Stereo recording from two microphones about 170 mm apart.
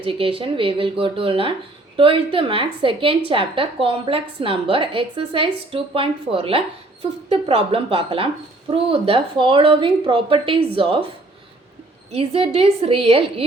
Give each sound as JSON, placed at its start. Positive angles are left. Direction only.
{"t": 0.0, "sound": "a woman's voice", "side_deg": -30}
{"t": 12.1, "sound": "a woman's voice", "side_deg": -35}